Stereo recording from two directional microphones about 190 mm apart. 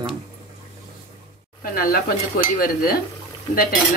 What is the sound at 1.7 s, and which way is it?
Speech, 50° left (ahead or behind).